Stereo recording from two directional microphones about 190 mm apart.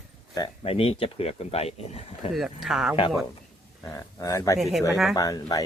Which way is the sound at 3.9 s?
15° left (ahead or behind).